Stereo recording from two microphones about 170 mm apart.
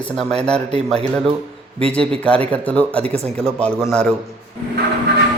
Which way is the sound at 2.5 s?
10° left (ahead or behind).